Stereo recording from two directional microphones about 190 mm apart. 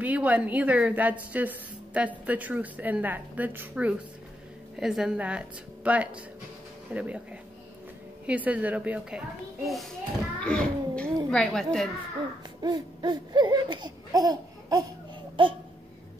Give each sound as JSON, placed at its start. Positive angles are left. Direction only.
{"t": 0.0, "sound": "a woman's voice", "side_deg": -10}
{"t": 8.3, "sound": "a woman's voice", "side_deg": -5}
{"t": 12.6, "sound": "a sound", "side_deg": -25}